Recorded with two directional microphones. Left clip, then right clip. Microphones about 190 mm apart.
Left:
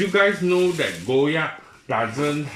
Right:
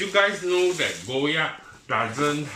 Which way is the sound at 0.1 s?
45° left (ahead or behind).